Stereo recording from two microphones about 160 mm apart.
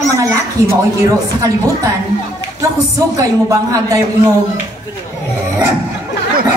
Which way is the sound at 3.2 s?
20° right (ahead or behind).